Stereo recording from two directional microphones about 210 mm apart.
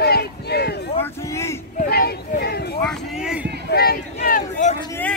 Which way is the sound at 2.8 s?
5° right (ahead or behind).